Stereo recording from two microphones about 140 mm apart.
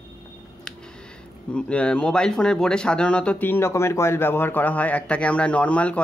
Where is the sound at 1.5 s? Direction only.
10° left (ahead or behind).